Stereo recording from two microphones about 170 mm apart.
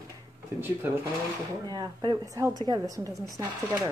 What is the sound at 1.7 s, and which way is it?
A woman's voice, 25° right (ahead or behind).